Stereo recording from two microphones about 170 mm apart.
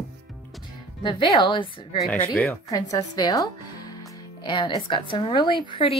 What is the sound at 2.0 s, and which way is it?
Speech, 5° left (ahead or behind).